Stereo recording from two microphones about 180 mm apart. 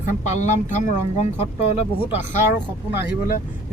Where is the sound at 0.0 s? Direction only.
40° left (ahead or behind).